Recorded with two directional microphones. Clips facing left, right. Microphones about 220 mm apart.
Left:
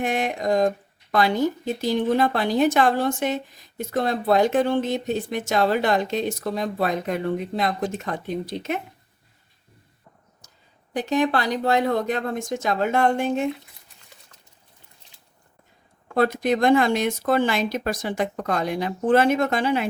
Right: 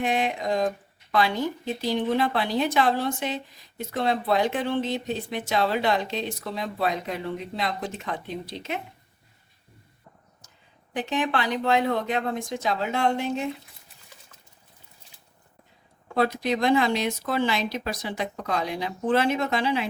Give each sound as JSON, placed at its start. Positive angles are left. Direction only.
{"t": 0.0, "sound": "a woman's voice", "side_deg": 45}
{"t": 10.9, "sound": "a woman's voice", "side_deg": 40}
{"t": 16.1, "sound": "a woman's voice", "side_deg": 50}